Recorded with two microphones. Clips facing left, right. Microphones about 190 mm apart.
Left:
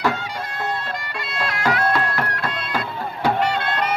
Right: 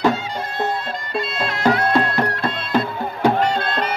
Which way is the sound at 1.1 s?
25° right (ahead or behind).